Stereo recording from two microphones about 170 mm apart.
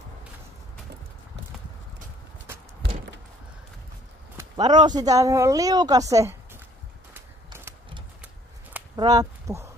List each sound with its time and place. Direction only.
4.4 s speech: 25° right (ahead or behind)
8.9 s speech: 25° right (ahead or behind)